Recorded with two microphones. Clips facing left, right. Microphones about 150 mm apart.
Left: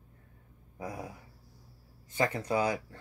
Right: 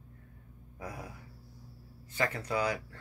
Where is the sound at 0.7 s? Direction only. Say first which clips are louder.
Left 3 dB; 25° left (ahead or behind).